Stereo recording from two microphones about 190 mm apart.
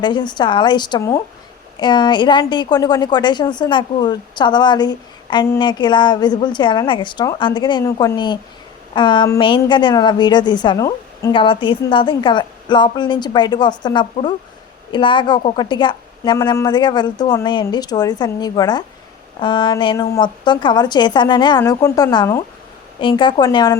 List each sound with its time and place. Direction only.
0.0 s a woman's voice: 25° left (ahead or behind)